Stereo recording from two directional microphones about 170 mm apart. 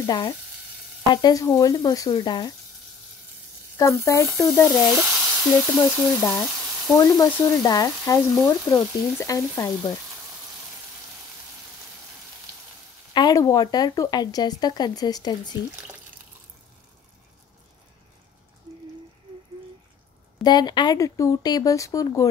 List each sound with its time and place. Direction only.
0.0 s speech: 25° left (ahead or behind)
3.7 s frying: 15° left (ahead or behind)
4.6 s sizzle: centre (ahead or behind)
7.0 s speech: 20° left (ahead or behind)
8.5 s frying: 15° left (ahead or behind)
13.1 s speech: 25° left (ahead or behind)
20.4 s speech: 25° left (ahead or behind)